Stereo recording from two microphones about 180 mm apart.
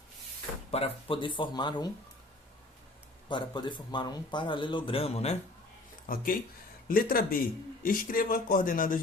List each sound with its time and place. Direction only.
0.7 s speech: 30° left (ahead or behind)
3.2 s speech: 25° left (ahead or behind)
6.1 s speech: 50° left (ahead or behind)